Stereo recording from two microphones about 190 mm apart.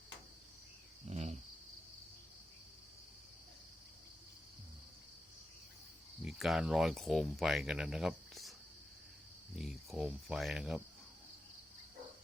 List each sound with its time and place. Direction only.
1.0 s cricket: 35° right (ahead or behind)
6.2 s speech: centre (ahead or behind)
9.6 s speech: centre (ahead or behind)